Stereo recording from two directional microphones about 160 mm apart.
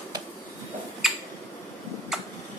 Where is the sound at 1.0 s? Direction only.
Centre (ahead or behind).